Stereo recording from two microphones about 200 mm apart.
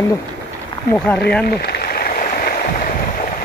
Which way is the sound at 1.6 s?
50° left (ahead or behind).